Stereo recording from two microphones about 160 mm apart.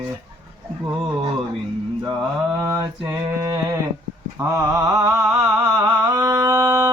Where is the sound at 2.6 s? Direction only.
20° right (ahead or behind).